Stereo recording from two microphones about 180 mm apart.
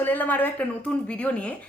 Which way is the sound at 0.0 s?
10° left (ahead or behind).